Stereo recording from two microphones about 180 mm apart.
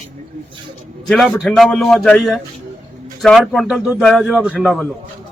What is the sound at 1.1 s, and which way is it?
Speech, centre (ahead or behind).